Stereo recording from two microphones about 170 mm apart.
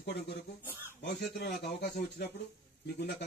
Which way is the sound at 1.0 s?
75° left (ahead or behind).